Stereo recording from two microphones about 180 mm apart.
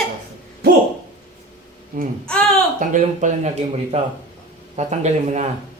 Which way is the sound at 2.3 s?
5° left (ahead or behind).